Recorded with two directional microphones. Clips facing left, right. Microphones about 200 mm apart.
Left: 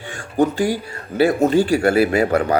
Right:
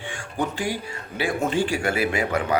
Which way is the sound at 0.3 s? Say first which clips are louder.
Left 9 dB; 40° left (ahead or behind).